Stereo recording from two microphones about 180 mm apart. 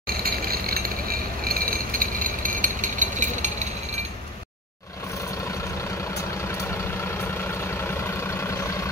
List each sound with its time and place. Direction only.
0.0 s vehicle: 55° right (ahead or behind)
1.4 s a sound: 55° right (ahead or behind)
7.8 s vehicle: 15° left (ahead or behind)